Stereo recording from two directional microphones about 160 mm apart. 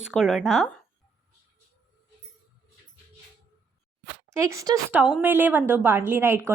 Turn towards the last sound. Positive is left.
turn(degrees=-15)  # may be behind; listen again after turning